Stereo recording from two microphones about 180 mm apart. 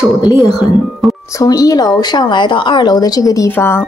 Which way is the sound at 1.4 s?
20° left (ahead or behind).